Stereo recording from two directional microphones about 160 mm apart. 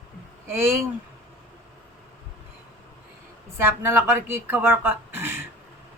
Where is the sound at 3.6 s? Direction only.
15° right (ahead or behind).